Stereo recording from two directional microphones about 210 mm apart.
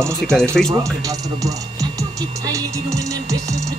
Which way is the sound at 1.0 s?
15° right (ahead or behind).